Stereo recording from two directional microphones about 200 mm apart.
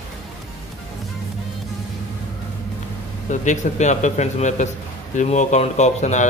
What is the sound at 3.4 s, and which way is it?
A man's voice, 35° left (ahead or behind).